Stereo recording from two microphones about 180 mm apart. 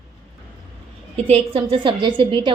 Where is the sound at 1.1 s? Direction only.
35° right (ahead or behind).